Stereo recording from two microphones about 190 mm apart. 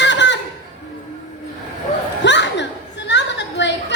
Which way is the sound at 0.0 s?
70° left (ahead or behind).